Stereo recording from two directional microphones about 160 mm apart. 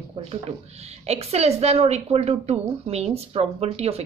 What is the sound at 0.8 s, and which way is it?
A woman's voice, 40° right (ahead or behind).